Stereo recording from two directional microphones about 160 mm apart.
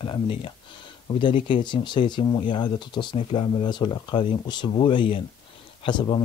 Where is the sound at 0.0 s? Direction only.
30° left (ahead or behind).